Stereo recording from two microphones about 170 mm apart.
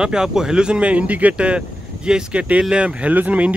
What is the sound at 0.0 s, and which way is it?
Speech, 5° right (ahead or behind).